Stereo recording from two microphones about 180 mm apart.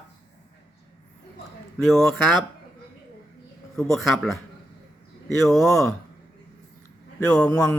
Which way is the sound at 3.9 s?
Centre (ahead or behind).